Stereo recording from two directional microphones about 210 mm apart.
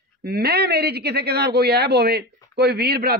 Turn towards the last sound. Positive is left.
turn(degrees=-50)  # may be behind; listen again after turning